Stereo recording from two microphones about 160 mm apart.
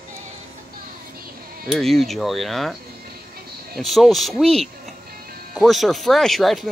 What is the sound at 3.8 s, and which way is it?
Speech, centre (ahead or behind).